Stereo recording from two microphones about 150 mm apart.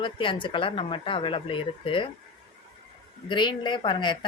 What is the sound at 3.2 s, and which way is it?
A woman's voice, 30° left (ahead or behind).